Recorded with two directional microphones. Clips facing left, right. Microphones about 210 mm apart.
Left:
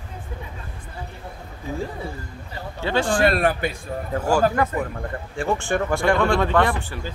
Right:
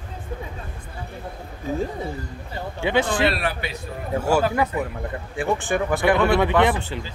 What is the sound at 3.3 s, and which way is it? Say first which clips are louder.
Speech: left 5 dB; 50° left (ahead or behind).